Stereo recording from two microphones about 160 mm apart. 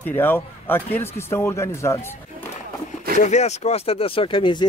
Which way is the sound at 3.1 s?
45° left (ahead or behind).